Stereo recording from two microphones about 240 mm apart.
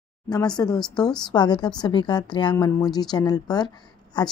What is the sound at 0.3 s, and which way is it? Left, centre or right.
Speech, centre.